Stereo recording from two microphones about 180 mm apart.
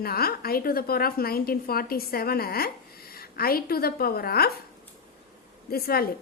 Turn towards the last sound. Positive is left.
turn(degrees=55)  # may be behind; listen again after turning